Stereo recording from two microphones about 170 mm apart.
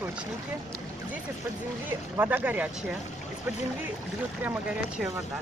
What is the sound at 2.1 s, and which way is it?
Speech, 10° right (ahead or behind).